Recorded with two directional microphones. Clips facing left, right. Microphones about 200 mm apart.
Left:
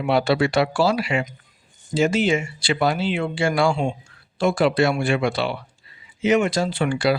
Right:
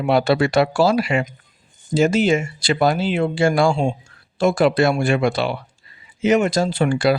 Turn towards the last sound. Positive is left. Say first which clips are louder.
# right 3 dB
turn(degrees=-45)  # may be behind; listen again after turning